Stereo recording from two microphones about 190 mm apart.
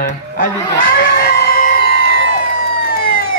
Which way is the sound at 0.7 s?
50° left (ahead or behind).